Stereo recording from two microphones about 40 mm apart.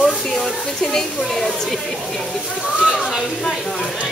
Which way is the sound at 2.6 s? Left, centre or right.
Centre.